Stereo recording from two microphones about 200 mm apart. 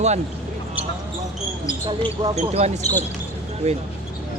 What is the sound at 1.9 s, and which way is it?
Speech, 30° right (ahead or behind).